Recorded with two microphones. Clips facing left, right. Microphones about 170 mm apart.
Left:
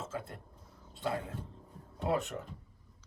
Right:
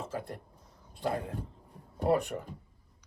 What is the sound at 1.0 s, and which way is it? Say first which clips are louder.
Speech: right 3 dB; 40° right (ahead or behind).